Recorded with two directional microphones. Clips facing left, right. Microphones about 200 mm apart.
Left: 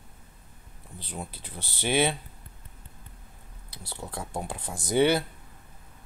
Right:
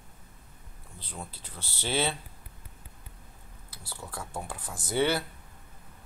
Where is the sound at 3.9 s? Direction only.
25° left (ahead or behind).